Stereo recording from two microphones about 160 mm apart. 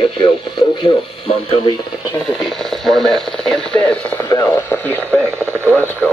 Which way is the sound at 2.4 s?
Centre (ahead or behind).